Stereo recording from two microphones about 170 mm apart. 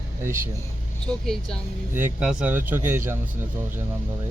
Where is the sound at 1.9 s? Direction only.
10° right (ahead or behind).